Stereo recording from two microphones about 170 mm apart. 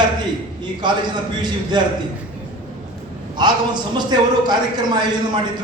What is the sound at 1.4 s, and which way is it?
Speech, 25° right (ahead or behind).